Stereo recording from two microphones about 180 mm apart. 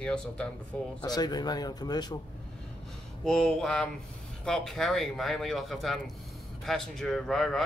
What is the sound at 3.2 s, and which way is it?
Speech, centre (ahead or behind).